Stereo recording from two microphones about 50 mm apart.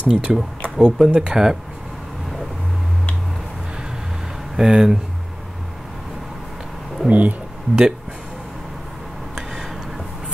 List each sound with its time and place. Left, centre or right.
0.1 s speech: centre
4.6 s speech: centre
7.1 s speech: right